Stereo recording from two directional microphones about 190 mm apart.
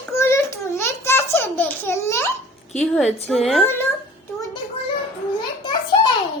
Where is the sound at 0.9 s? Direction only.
15° left (ahead or behind).